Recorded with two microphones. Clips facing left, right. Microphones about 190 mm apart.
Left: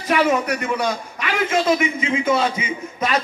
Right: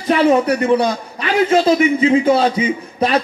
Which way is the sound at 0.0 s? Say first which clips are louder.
Right 5 dB; 30° right (ahead or behind).